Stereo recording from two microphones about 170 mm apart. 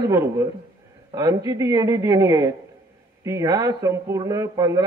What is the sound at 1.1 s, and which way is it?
Speech, 20° right (ahead or behind).